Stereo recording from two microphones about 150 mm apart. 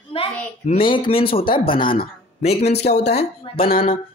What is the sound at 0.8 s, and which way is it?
Speech, 70° left (ahead or behind).